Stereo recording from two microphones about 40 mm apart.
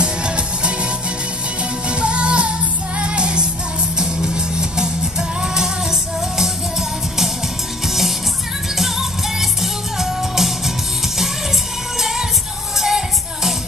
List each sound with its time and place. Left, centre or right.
0.0 s music: right
1.9 s music: right; by 10.5 s centre
12.0 s music: centre